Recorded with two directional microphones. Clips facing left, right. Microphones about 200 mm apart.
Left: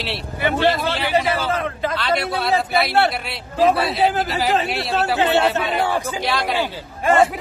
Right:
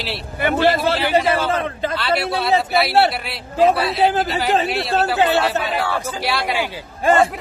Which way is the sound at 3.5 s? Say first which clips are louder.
Right 1 dB; 30° right (ahead or behind).